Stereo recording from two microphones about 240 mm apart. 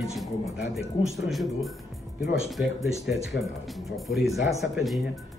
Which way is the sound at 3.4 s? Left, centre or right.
Left.